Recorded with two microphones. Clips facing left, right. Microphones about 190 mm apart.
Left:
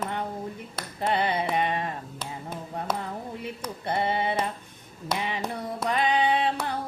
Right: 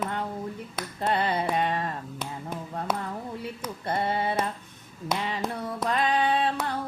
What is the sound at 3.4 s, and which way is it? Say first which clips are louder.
Female singing: even; 15° left (ahead or behind).